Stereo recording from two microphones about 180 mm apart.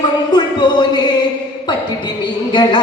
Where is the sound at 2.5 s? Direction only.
25° left (ahead or behind).